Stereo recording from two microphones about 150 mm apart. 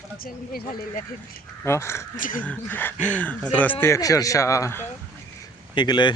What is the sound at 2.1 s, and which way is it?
Speech, 65° left (ahead or behind).